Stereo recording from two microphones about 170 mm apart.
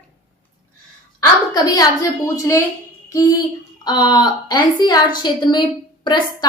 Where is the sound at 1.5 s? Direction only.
20° left (ahead or behind).